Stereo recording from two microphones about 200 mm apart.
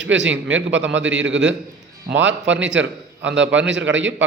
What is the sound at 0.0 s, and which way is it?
A man's voice, 65° right (ahead or behind).